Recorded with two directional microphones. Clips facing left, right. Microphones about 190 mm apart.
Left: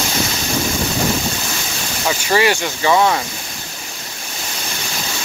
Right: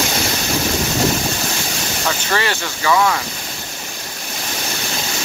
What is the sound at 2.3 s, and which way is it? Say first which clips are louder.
Speech: left 6 dB; 15° left (ahead or behind).